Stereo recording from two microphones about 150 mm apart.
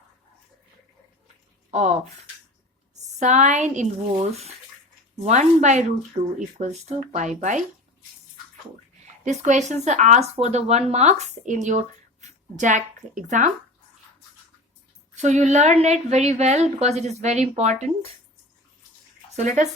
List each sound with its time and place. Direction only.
1.7 s a woman's voice: 50° right (ahead or behind)
4.1 s a woman's voice: 45° right (ahead or behind)
9.2 s a woman's voice: 50° right (ahead or behind)
15.1 s a woman's voice: 50° right (ahead or behind)